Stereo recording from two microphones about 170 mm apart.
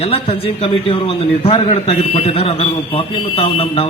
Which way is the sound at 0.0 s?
35° left (ahead or behind).